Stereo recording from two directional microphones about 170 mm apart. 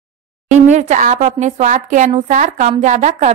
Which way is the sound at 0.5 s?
45° right (ahead or behind).